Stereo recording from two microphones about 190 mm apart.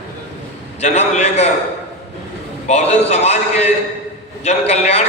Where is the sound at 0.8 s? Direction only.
35° left (ahead or behind).